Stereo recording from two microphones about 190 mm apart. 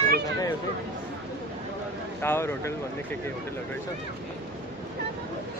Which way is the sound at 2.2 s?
15° left (ahead or behind).